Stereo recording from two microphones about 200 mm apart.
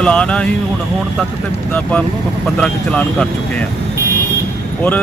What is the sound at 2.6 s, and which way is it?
Speech, 5° left (ahead or behind).